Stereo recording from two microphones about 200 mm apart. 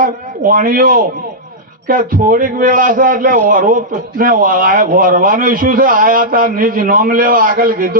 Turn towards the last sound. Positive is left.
turn(degrees=-45)  # may be behind; listen again after turning